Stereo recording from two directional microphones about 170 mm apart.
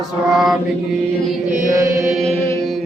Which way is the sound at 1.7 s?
20° right (ahead or behind).